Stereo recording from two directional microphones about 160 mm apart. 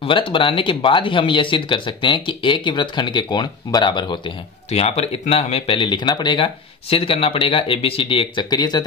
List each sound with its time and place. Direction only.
0.0 s speech: 35° left (ahead or behind)
4.6 s speech: 40° left (ahead or behind); by 8.8 s 25° left (ahead or behind)